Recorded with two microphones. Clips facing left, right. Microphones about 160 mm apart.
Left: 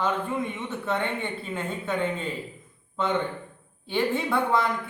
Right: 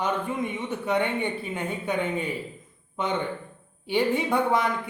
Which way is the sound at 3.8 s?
15° right (ahead or behind).